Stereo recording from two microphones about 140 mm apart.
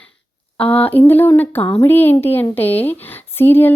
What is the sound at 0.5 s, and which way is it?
A woman's voice, 10° left (ahead or behind).